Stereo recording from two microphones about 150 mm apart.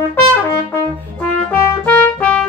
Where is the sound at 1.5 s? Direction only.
15° left (ahead or behind).